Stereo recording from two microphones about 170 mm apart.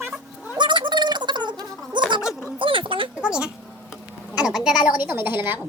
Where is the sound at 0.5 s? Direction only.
25° right (ahead or behind).